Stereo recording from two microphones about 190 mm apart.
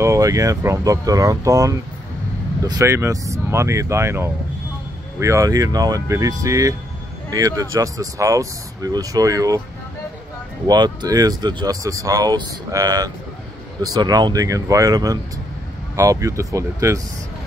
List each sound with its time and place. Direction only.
0.0 s speech: 15° right (ahead or behind)
10.7 s speech: 20° right (ahead or behind)